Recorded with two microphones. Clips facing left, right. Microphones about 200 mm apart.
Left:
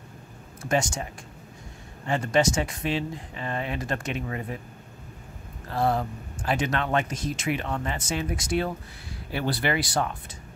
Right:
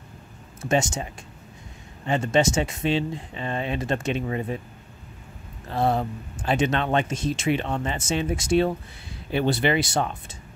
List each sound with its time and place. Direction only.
0.7 s speech: 25° right (ahead or behind)
2.0 s speech: 20° right (ahead or behind)
5.7 s speech: 25° right (ahead or behind)